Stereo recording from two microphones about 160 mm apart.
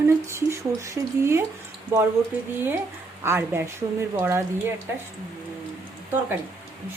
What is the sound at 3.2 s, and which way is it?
A woman's voice, 15° right (ahead or behind).